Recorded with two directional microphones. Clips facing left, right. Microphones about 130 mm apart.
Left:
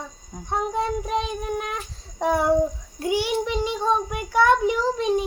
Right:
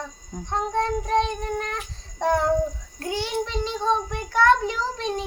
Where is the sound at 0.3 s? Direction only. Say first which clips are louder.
Even; 10° left (ahead or behind).